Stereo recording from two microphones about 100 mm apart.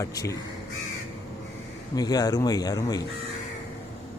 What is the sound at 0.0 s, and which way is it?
Speech, 35° left (ahead or behind).